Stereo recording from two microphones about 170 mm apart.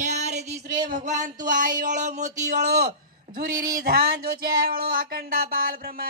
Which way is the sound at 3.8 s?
60° right (ahead or behind).